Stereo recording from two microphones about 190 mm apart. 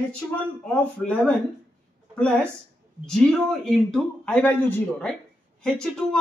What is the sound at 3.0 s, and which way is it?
A man's voice, centre (ahead or behind).